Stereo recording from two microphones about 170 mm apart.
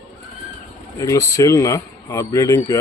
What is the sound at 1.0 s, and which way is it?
A man's voice, 20° left (ahead or behind).